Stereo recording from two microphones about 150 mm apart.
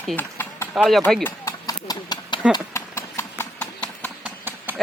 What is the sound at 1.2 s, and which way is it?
Clip-clop, 25° left (ahead or behind).